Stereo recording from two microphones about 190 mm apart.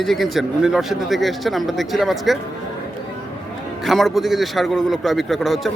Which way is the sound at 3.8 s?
Centre (ahead or behind).